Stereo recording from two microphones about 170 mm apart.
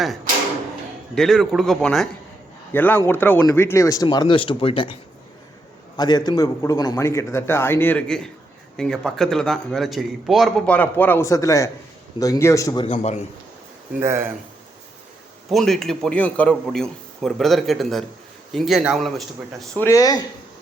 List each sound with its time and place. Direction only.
1.1 s a man's voice: centre (ahead or behind); by 4.9 s 30° left (ahead or behind)
6.0 s a man's voice: 25° left (ahead or behind); by 10.8 s centre (ahead or behind)
10.8 s a man's voice: 10° left (ahead or behind)
12.8 s a man's voice: 35° left (ahead or behind)
14.0 s speech: 15° right (ahead or behind)
15.4 s a man's voice: centre (ahead or behind)
19.8 s speech: 20° left (ahead or behind)